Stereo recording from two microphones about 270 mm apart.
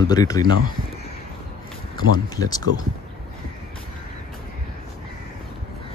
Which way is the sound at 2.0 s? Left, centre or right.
Centre.